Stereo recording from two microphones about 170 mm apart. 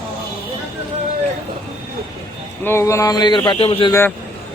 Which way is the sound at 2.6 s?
15° left (ahead or behind).